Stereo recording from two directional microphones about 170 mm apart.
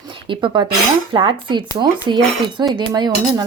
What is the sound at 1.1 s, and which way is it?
Stir, 30° right (ahead or behind).